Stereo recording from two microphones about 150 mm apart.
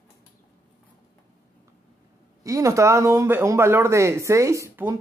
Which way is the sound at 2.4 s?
20° right (ahead or behind).